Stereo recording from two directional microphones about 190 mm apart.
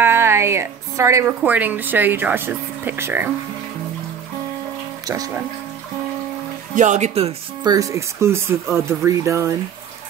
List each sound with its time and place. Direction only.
0.0 s a woman's voice: 15° right (ahead or behind)
5.0 s speech: 20° right (ahead or behind)
6.7 s speech: 40° right (ahead or behind)
7.6 s speech: 20° right (ahead or behind)